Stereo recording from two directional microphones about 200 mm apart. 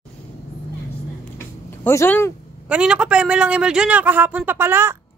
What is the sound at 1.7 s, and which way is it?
Speech, 10° left (ahead or behind).